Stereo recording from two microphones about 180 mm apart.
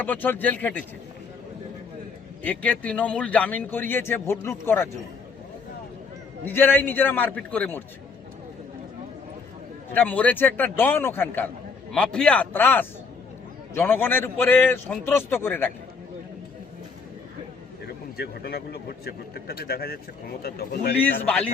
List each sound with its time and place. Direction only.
0.0 s a man's voice: 10° left (ahead or behind)
2.4 s a man's voice: 10° left (ahead or behind)
6.4 s a man's voice: 10° left (ahead or behind)
9.9 s a man's voice: 10° left (ahead or behind)
17.8 s a man's voice: 60° left (ahead or behind)
21.0 s a man's voice: 5° left (ahead or behind)